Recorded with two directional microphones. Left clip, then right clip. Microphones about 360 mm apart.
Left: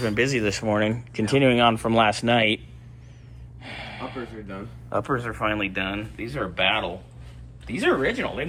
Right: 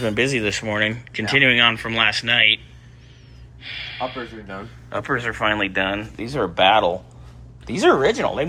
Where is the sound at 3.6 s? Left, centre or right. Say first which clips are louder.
Right 7 dB; centre.